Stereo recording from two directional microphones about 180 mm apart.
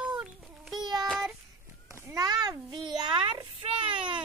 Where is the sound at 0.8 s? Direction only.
25° right (ahead or behind).